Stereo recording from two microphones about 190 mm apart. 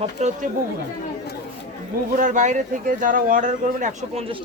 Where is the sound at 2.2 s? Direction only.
40° right (ahead or behind).